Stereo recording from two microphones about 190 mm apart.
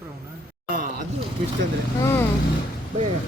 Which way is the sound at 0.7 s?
45° right (ahead or behind).